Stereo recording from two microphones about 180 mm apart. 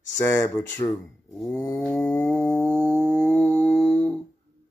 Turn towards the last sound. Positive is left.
turn(degrees=5)  # may be behind; listen again after turning